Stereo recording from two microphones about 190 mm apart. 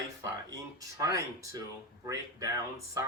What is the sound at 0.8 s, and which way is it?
Speech, 15° right (ahead or behind).